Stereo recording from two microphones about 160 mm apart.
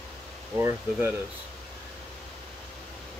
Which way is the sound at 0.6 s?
15° right (ahead or behind).